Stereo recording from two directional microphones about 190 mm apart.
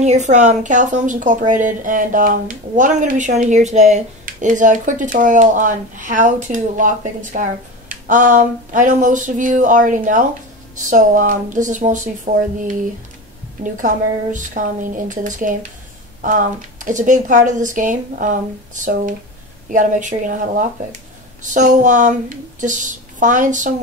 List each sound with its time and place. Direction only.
0.0 s a woman's voice: 35° right (ahead or behind)
13.7 s a woman's voice: 40° right (ahead or behind)